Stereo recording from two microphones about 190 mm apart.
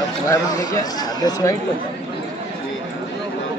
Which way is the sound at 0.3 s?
20° left (ahead or behind).